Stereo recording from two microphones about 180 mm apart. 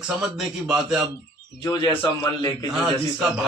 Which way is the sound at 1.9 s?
10° left (ahead or behind).